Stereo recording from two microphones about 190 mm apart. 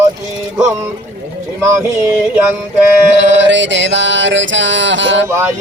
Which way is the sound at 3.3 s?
75° right (ahead or behind).